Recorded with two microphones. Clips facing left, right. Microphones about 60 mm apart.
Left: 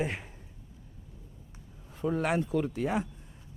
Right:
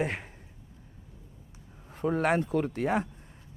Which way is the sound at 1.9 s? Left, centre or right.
Right.